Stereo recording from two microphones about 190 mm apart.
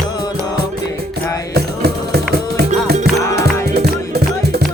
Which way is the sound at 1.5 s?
60° right (ahead or behind).